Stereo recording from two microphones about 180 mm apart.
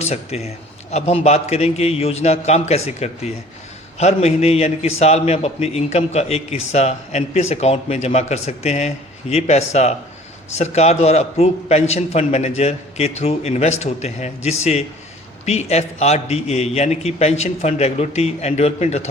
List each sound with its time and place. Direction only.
0.0 s a man's voice: 35° left (ahead or behind)